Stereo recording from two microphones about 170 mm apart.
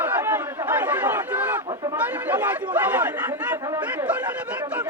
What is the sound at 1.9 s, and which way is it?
Chatter, 10° right (ahead or behind).